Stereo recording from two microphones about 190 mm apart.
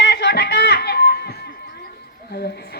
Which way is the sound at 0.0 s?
65° left (ahead or behind).